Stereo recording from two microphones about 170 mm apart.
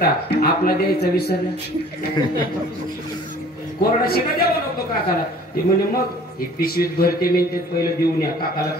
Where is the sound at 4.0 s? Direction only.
65° left (ahead or behind).